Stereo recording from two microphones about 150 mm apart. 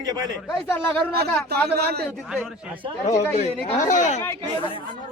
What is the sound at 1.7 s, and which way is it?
Speech, 90° right.